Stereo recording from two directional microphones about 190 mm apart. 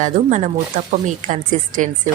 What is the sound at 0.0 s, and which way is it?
A woman's voice, 40° right (ahead or behind).